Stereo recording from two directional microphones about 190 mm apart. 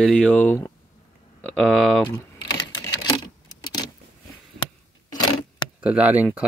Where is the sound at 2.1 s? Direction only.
20° left (ahead or behind).